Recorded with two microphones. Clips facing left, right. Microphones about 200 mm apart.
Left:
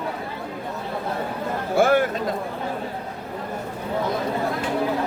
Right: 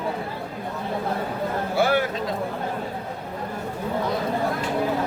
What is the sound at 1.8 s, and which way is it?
Speech, 50° left (ahead or behind).